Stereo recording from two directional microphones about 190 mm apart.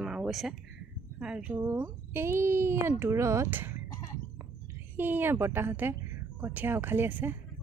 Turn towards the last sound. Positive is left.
turn(degrees=-10)  # may be behind; listen again after turning